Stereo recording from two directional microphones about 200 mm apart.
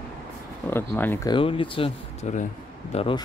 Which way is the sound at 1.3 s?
25° left (ahead or behind).